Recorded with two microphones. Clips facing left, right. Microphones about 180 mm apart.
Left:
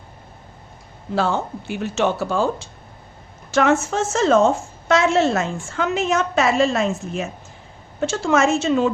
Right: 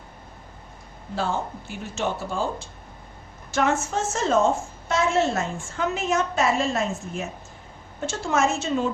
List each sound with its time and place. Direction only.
1.1 s speech: 80° left
3.5 s a woman's voice: 90° left